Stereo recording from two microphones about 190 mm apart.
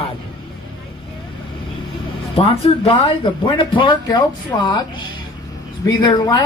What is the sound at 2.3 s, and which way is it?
Speech, 30° left (ahead or behind).